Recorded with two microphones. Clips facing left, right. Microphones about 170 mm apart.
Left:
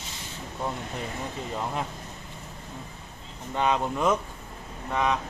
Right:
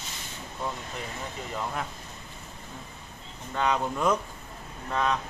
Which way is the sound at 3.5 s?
20° left (ahead or behind).